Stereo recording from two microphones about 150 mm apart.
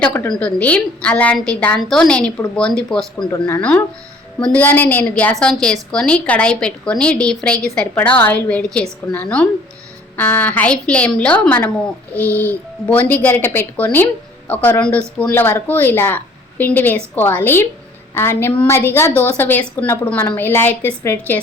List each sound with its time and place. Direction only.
0.0 s a woman's voice: 15° left (ahead or behind)
3.3 s speech: 25° left (ahead or behind)
3.6 s a woman's voice: 10° left (ahead or behind)